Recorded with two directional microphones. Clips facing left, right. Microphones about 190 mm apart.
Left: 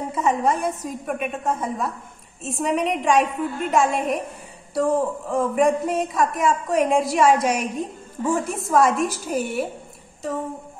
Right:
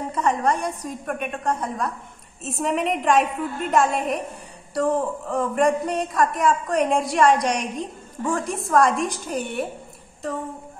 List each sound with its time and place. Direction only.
0.1 s speech: 5° left (ahead or behind)